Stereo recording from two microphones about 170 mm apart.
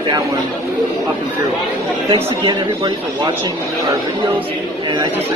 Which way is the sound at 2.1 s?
30° right (ahead or behind).